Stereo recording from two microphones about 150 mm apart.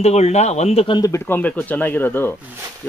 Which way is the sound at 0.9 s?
20° left (ahead or behind).